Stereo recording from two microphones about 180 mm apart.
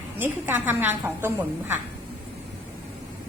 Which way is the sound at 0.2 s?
10° right (ahead or behind).